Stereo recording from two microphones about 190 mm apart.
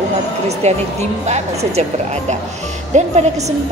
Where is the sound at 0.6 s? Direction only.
35° right (ahead or behind).